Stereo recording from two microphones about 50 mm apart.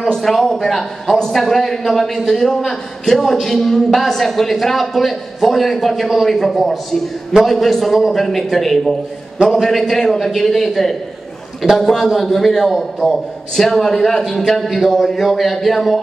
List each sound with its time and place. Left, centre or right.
0.0 s a man's voice: centre
1.1 s a man's voice: centre